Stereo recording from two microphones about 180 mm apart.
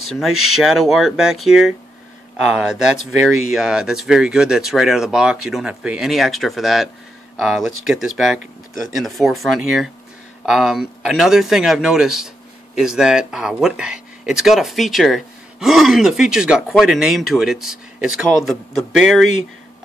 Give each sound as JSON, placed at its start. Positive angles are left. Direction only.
{"t": 0.0, "sound": "speech", "side_deg": 0}